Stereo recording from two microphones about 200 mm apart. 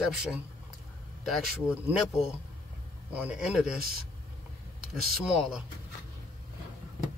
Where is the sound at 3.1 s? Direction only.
5° right (ahead or behind).